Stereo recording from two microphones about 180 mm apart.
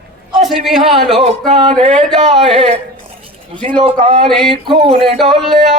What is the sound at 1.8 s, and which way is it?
Speech, 40° right (ahead or behind).